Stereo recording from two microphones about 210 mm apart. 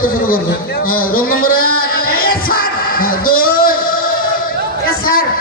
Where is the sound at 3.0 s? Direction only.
45° left (ahead or behind).